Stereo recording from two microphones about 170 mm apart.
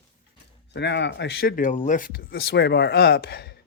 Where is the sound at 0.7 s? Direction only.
90° left.